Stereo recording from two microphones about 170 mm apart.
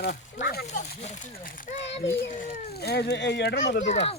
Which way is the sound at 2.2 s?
60° left (ahead or behind).